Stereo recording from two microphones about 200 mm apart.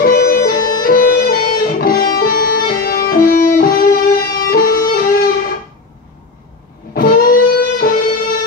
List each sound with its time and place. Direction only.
0.0 s music: 50° left (ahead or behind)
6.9 s music: 50° left (ahead or behind)